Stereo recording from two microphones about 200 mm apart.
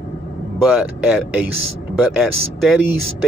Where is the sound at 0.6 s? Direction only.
5° right (ahead or behind).